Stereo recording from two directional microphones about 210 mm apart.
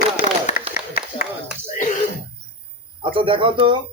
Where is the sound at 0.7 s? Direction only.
45° left (ahead or behind).